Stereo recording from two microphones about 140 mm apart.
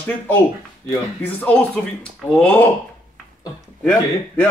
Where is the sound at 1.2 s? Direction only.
10° left (ahead or behind).